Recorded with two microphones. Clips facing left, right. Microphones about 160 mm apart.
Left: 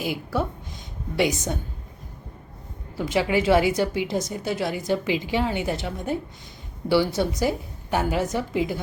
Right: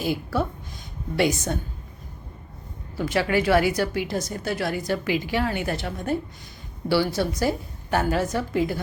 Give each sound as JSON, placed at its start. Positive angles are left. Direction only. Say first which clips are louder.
{"t": 0.0, "sound": "a woman's voice", "louder": "right 1 dB", "side_deg": 15}
{"t": 3.0, "sound": "a woman's voice", "louder": "even", "side_deg": 15}